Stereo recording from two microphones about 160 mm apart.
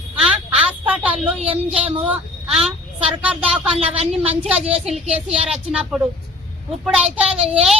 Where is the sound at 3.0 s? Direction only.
10° right (ahead or behind).